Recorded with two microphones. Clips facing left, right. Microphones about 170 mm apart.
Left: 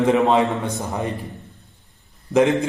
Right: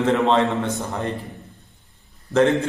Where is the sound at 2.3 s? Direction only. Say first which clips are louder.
Left 1 dB; 10° left (ahead or behind).